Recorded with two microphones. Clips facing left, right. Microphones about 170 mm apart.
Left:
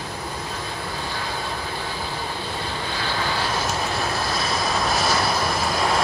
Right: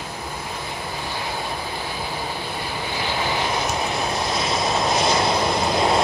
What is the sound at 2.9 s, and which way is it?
Vehicle, 15° right (ahead or behind).